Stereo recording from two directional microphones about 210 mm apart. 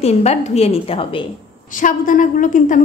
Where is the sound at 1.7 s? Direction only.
40° left (ahead or behind).